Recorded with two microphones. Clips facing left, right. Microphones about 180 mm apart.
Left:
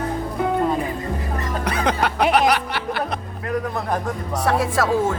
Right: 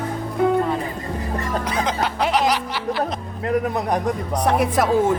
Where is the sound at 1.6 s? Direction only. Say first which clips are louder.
Left 5 dB; 65° left (ahead or behind).